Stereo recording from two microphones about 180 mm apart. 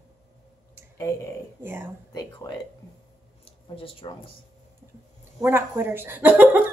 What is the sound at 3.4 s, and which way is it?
Speech, 30° left (ahead or behind).